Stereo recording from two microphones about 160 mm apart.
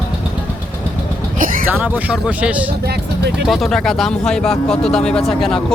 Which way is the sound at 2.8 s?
90° right.